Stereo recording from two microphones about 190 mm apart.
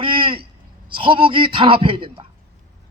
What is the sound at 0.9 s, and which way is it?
A man's voice, 25° right (ahead or behind).